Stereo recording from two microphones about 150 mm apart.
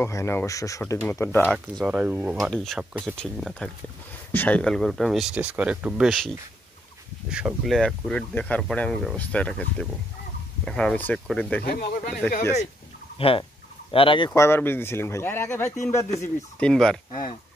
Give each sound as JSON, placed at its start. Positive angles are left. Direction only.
{"t": 0.0, "sound": "speech", "side_deg": 20}
{"t": 1.9, "sound": "speech", "side_deg": -10}
{"t": 2.4, "sound": "speech", "side_deg": 5}
{"t": 2.8, "sound": "speech", "side_deg": -10}
{"t": 3.2, "sound": "speech", "side_deg": 5}
{"t": 11.6, "sound": "speech", "side_deg": 85}
{"t": 13.2, "sound": "speech", "side_deg": 35}
{"t": 14.3, "sound": "speech", "side_deg": 15}
{"t": 16.5, "sound": "speech", "side_deg": 5}